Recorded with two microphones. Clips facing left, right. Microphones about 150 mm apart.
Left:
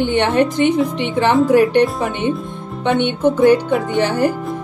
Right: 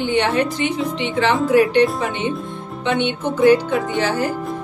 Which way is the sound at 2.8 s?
55° left (ahead or behind).